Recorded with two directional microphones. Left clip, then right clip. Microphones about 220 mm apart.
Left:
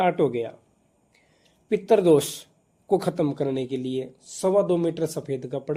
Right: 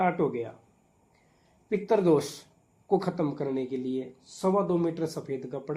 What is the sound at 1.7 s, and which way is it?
Speech, 45° left (ahead or behind).